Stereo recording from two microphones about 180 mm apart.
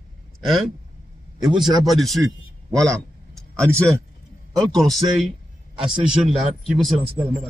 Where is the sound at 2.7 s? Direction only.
5° left (ahead or behind).